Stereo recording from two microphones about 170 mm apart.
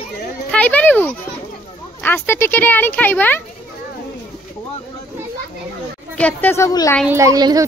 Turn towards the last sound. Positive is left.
turn(degrees=-20)  # may be behind; listen again after turning